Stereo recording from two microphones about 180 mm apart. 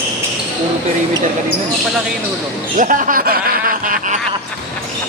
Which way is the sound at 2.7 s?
45° right (ahead or behind).